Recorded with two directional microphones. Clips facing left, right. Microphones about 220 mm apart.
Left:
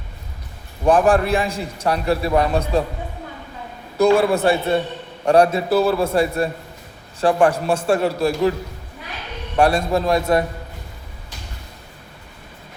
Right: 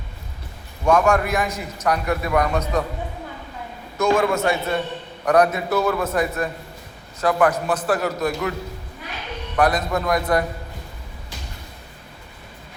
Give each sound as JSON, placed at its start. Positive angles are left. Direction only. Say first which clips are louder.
{"t": 0.9, "sound": "a man's voice", "louder": "left 3 dB", "side_deg": 30}
{"t": 3.9, "sound": "a man's voice", "louder": "left 4 dB", "side_deg": 35}
{"t": 9.6, "sound": "a man's voice", "louder": "left 3 dB", "side_deg": 30}